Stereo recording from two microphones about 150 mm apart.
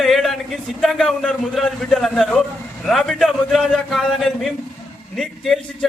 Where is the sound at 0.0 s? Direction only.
Centre (ahead or behind).